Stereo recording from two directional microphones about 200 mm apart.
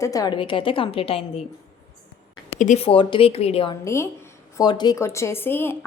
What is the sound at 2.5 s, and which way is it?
Speech, 35° left (ahead or behind).